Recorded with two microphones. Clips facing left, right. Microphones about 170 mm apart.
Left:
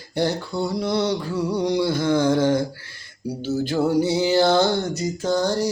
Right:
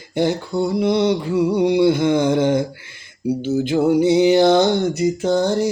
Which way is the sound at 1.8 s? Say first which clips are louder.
Right 4 dB; 20° right (ahead or behind).